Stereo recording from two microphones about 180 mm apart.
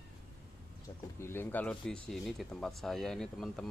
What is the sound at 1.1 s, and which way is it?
A man's voice, 15° left (ahead or behind).